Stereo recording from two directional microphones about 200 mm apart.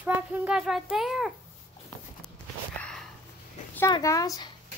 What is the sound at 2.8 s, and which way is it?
Sniff, 5° left (ahead or behind).